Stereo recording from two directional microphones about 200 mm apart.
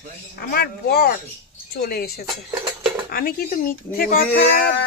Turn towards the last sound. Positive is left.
turn(degrees=45)  # may be behind; listen again after turning